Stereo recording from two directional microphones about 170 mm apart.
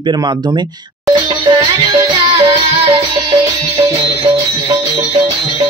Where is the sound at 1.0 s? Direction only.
20° right (ahead or behind).